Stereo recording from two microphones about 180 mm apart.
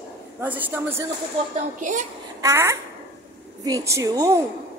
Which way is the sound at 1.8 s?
45° right (ahead or behind).